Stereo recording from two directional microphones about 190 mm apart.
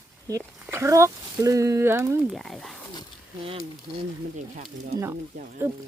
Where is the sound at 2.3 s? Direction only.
Centre (ahead or behind).